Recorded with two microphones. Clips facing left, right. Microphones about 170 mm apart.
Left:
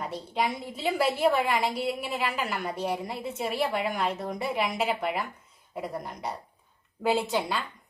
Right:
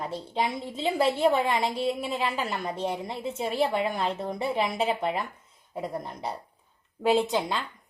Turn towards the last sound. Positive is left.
turn(degrees=-20)  # may be behind; listen again after turning